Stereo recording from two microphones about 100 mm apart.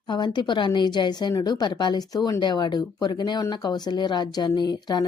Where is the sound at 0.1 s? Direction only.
50° left (ahead or behind).